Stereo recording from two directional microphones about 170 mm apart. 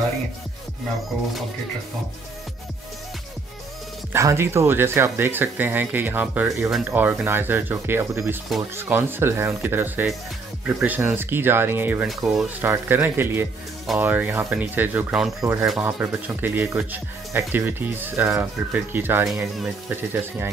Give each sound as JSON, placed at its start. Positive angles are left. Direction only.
{"t": 4.1, "sound": "speech", "side_deg": -15}
{"t": 8.5, "sound": "speech", "side_deg": 0}
{"t": 8.8, "sound": "speech", "side_deg": -10}
{"t": 12.1, "sound": "speech", "side_deg": 0}
{"t": 12.6, "sound": "speech", "side_deg": -10}
{"t": 15.4, "sound": "speech", "side_deg": -15}